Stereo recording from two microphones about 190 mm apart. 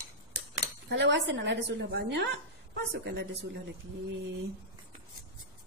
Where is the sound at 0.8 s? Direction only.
65° right (ahead or behind).